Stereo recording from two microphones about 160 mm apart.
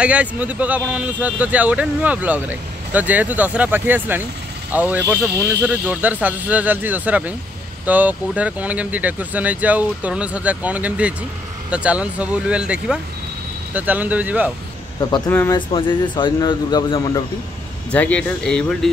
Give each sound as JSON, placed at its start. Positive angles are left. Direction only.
{"t": 0.0, "sound": "speech", "side_deg": -10}
{"t": 15.0, "sound": "speech", "side_deg": 25}
{"t": 15.7, "sound": "speech", "side_deg": 30}
{"t": 17.9, "sound": "speech", "side_deg": 10}